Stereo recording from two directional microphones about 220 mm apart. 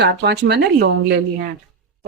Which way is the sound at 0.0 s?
50° right (ahead or behind).